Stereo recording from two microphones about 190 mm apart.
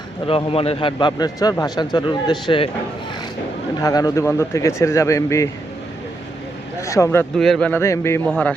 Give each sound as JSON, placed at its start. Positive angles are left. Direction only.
{"t": 0.3, "sound": "a man's voice", "side_deg": 30}
{"t": 3.8, "sound": "a man's voice", "side_deg": 20}
{"t": 6.8, "sound": "a man's voice", "side_deg": 15}
{"t": 7.3, "sound": "a man's voice", "side_deg": 0}